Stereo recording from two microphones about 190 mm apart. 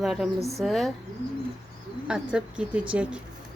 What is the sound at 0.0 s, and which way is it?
Speech, centre (ahead or behind).